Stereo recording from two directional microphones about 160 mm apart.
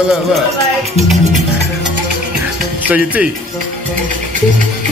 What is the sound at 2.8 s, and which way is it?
Speech, 10° right (ahead or behind).